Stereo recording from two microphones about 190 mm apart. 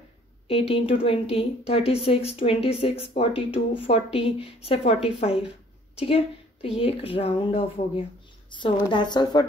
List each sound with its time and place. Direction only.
0.5 s a woman's voice: 30° left (ahead or behind)